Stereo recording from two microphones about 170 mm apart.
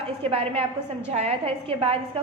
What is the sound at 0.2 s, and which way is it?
A woman's voice, 35° right (ahead or behind).